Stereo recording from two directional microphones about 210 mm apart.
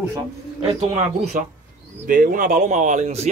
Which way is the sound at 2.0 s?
40° right (ahead or behind).